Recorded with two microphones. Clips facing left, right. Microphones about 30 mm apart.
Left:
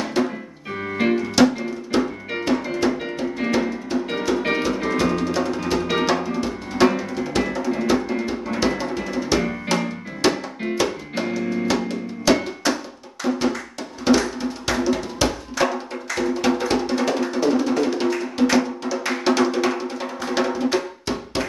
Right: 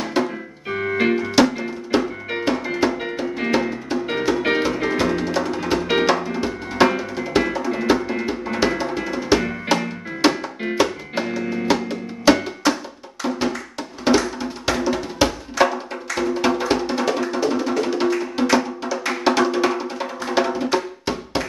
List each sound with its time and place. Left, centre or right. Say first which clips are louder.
0.2 s music: right 1 dB; centre
0.7 s keyboard: right 2 dB; centre
1.6 s music: right 1 dB; centre
6.3 s drum: right 2 dB; centre
10.6 s music: right 3 dB; centre
14.0 s music: even; centre